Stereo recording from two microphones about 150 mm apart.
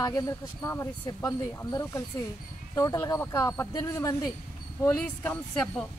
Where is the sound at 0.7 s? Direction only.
15° left (ahead or behind).